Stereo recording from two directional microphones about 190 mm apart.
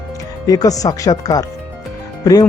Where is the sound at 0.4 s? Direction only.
20° left (ahead or behind).